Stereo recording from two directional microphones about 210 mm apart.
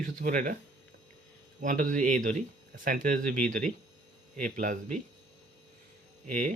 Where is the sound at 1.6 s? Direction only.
40° right (ahead or behind).